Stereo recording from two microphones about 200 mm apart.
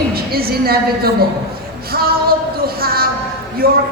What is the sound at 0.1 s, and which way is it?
A woman's voice, 50° right (ahead or behind).